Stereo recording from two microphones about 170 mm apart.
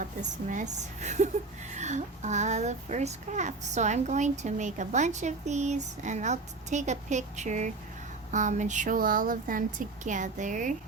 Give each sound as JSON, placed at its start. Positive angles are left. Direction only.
{"t": 0.0, "sound": "a child's voice", "side_deg": -50}